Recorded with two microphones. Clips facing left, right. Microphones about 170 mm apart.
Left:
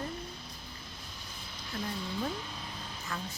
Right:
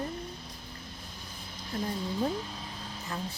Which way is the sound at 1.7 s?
35° right (ahead or behind).